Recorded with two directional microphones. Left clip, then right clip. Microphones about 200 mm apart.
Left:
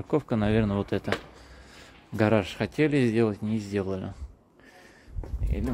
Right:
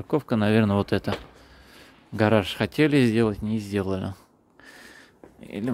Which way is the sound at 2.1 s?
15° right (ahead or behind).